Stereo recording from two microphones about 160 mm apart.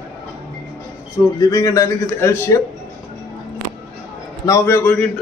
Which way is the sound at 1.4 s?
20° left (ahead or behind).